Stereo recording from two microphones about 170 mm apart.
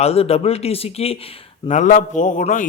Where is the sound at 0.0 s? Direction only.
35° left (ahead or behind).